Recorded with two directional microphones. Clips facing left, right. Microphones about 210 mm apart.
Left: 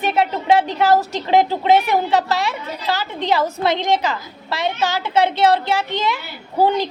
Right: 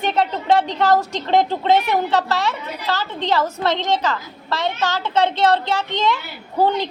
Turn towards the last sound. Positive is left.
turn(degrees=10)  # may be behind; listen again after turning